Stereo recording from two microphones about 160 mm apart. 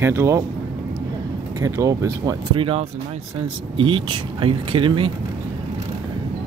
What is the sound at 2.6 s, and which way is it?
Speech, 35° right (ahead or behind).